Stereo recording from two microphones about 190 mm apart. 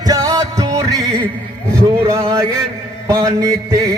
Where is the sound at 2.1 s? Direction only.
15° right (ahead or behind).